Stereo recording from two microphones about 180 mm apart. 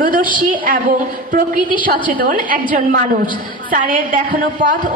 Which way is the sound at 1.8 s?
50° right (ahead or behind).